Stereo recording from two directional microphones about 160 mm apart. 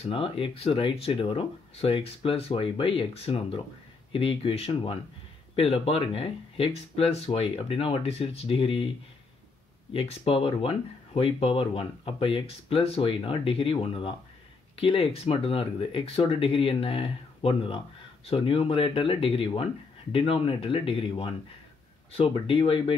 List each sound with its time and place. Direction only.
0.0 s speech: 35° left (ahead or behind)
9.9 s speech: 35° left (ahead or behind)